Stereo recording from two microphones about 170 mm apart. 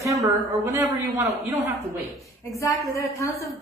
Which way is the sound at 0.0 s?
20° right (ahead or behind).